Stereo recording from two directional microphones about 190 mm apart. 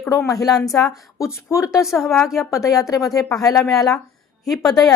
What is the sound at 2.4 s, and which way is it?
Speech, 15° left (ahead or behind).